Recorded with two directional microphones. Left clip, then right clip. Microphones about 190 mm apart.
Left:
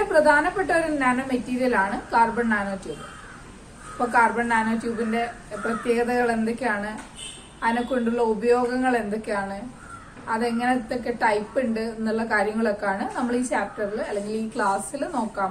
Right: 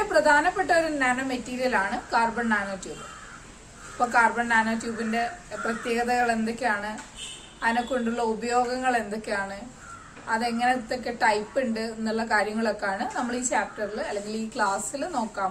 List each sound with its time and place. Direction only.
0.1 s a woman's voice: 20° right (ahead or behind)
3.9 s a woman's voice: 20° right (ahead or behind)
5.6 s a woman's voice: 20° right (ahead or behind)